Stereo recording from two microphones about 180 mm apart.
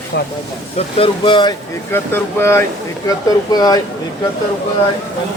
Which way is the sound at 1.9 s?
15° left (ahead or behind).